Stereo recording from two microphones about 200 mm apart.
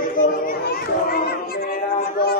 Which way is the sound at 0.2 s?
45° left (ahead or behind).